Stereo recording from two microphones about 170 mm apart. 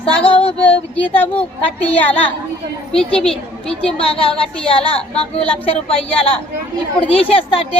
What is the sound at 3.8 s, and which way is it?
Speech, 35° left (ahead or behind).